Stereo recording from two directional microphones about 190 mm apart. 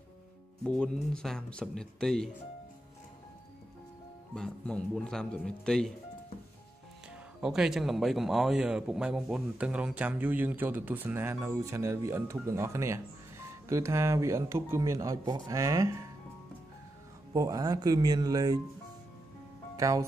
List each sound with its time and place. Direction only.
0.7 s speech: 5° left (ahead or behind)
4.4 s speech: 5° left (ahead or behind)
7.4 s speech: 5° right (ahead or behind)
17.3 s speech: 20° right (ahead or behind)
19.8 s speech: 15° right (ahead or behind)